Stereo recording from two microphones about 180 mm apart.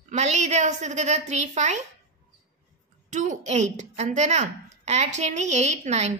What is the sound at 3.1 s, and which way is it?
Speech, 45° right (ahead or behind).